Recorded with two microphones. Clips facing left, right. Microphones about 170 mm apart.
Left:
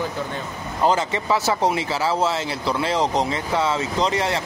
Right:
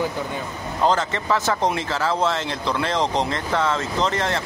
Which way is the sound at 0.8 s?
10° left (ahead or behind).